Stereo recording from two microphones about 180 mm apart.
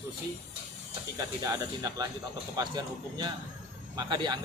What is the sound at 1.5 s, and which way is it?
Speech, 20° right (ahead or behind).